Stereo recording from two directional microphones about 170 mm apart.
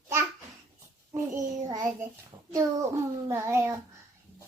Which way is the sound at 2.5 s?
15° right (ahead or behind).